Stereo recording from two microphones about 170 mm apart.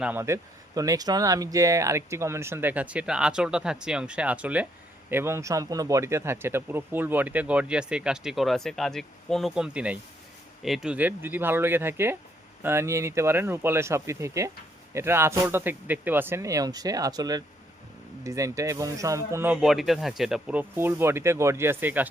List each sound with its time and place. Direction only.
0.0 s speech: 15° right (ahead or behind)
19.6 s speech: centre (ahead or behind)